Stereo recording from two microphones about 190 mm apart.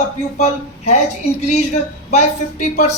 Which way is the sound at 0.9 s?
35° left (ahead or behind).